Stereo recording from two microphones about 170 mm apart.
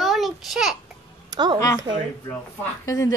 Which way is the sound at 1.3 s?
25° right (ahead or behind).